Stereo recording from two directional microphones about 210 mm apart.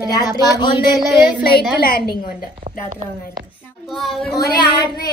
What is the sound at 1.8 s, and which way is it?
Speech, 45° left (ahead or behind).